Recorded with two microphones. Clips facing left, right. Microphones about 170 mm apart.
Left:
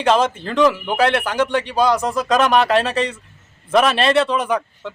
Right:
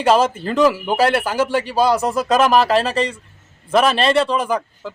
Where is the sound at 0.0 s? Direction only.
5° right (ahead or behind).